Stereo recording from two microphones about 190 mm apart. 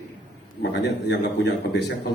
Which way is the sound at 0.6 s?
65° left (ahead or behind).